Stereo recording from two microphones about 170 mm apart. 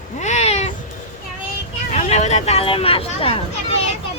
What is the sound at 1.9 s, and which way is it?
Speech, 40° left (ahead or behind).